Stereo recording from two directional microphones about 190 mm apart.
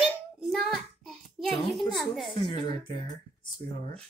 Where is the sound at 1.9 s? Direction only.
Centre (ahead or behind).